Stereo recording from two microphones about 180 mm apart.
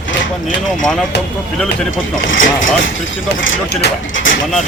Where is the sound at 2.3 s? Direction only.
90° left.